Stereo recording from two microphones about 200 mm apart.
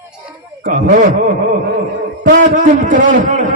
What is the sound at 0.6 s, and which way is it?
Speech, 40° right (ahead or behind).